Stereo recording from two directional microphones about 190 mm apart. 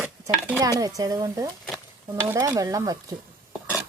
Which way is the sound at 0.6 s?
20° right (ahead or behind).